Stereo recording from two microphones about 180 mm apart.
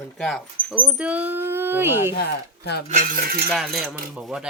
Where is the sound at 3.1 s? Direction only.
55° right (ahead or behind).